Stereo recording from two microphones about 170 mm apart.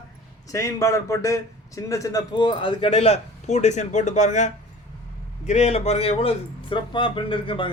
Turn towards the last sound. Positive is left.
turn(degrees=30)  # may be behind; listen again after turning